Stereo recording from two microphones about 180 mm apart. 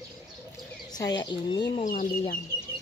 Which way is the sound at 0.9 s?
20° left (ahead or behind).